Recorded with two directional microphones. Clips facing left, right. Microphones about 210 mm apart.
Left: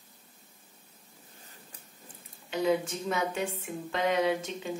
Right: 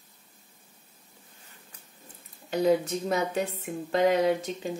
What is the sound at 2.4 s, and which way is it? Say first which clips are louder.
Speech: right 4 dB; 40° right (ahead or behind).